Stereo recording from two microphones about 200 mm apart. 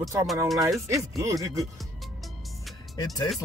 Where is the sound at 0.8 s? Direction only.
15° right (ahead or behind).